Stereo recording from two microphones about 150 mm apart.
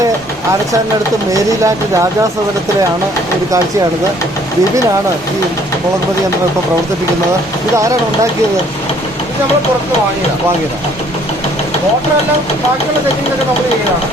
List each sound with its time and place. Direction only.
1.3 s speech: 20° right (ahead or behind)